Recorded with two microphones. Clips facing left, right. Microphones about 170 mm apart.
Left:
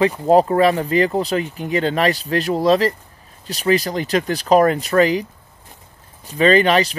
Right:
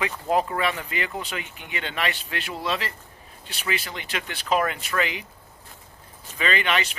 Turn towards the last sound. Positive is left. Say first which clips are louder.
# left 11 dB
turn(degrees=35)  # may be behind; listen again after turning